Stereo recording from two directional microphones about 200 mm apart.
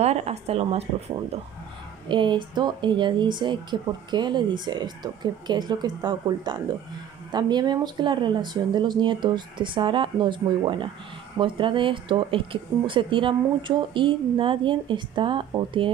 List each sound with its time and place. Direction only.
0.0 s speech: 30° right (ahead or behind)